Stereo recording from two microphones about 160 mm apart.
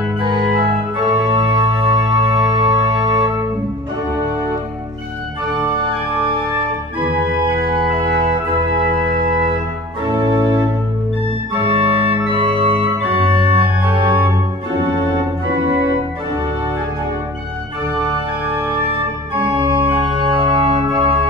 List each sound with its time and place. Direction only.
0.9 s organ: 30° right (ahead or behind)
10.0 s music: 25° right (ahead or behind)
11.5 s organ: 30° right (ahead or behind)
19.3 s organ: 30° right (ahead or behind)